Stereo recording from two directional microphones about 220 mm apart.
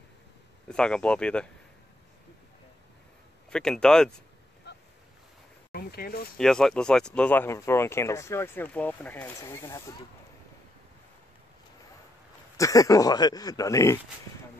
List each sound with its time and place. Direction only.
0.7 s speech: 5° left (ahead or behind)
3.4 s speech: 5° left (ahead or behind)
4.7 s waves: 50° left (ahead or behind)
5.7 s speech: 45° left (ahead or behind)
6.3 s speech: centre (ahead or behind)
12.5 s speech: 15° left (ahead or behind)